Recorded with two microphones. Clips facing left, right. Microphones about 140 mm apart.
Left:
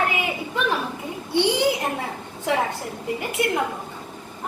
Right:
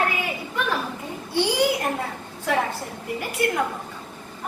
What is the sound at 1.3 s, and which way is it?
Speech, 25° left (ahead or behind).